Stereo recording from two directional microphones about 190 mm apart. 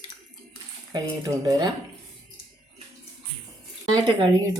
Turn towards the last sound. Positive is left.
turn(degrees=-25)  # may be behind; listen again after turning